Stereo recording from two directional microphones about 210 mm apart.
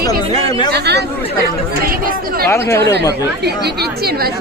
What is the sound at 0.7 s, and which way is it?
Speech, 50° right (ahead or behind).